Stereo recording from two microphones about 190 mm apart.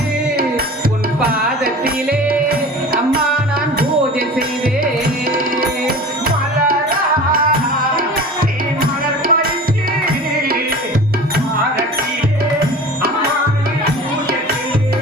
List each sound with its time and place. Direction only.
1.2 s music: 50° right (ahead or behind)
8.8 s music: 50° right (ahead or behind)